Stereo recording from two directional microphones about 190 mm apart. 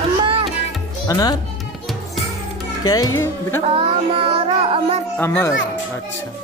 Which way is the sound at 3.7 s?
30° right (ahead or behind).